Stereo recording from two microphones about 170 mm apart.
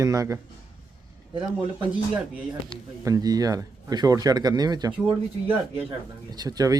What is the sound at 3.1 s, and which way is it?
Speech, 20° right (ahead or behind).